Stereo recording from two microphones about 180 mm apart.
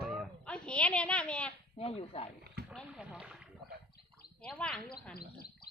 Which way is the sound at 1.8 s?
30° left (ahead or behind).